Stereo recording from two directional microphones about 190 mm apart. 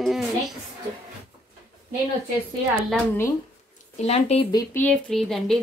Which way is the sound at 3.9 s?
35° left (ahead or behind).